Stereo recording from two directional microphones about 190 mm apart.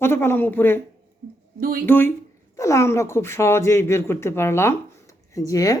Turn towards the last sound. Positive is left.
turn(degrees=20)  # may be behind; listen again after turning